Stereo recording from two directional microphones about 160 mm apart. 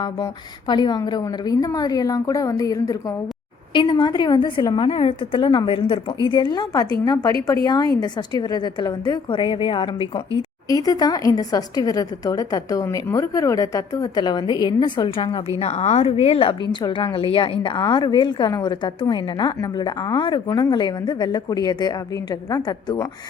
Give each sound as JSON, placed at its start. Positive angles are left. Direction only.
{"t": 0.7, "sound": "a woman's voice", "side_deg": 25}
{"t": 10.7, "sound": "a woman's voice", "side_deg": 20}